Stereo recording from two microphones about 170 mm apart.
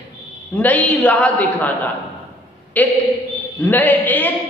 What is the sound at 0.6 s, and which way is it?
A man's voice, 10° left (ahead or behind).